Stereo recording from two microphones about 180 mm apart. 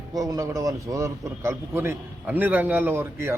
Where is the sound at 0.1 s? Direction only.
20° right (ahead or behind).